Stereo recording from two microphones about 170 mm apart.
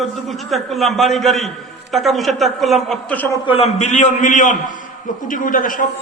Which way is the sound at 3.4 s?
35° left (ahead or behind).